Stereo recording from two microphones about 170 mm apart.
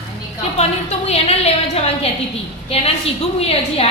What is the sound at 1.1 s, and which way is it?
Speech, 40° left (ahead or behind).